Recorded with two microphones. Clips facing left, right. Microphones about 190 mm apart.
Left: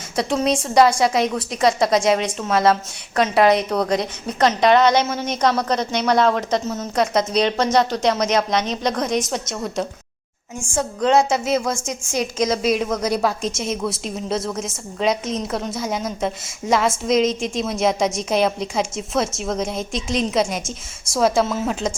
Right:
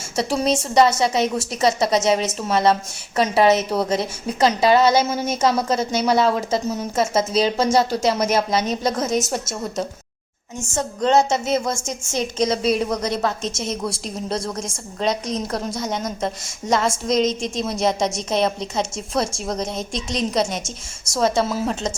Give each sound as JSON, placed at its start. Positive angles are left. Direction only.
{"t": 0.2, "sound": "a woman's voice", "side_deg": -5}
{"t": 10.7, "sound": "a woman's voice", "side_deg": 10}
{"t": 12.1, "sound": "a woman's voice", "side_deg": -30}
{"t": 13.0, "sound": "a woman's voice", "side_deg": 5}